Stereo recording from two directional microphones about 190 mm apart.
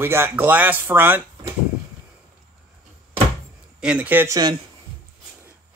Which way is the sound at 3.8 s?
5° right (ahead or behind).